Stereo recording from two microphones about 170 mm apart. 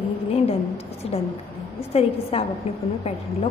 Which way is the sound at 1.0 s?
35° left (ahead or behind).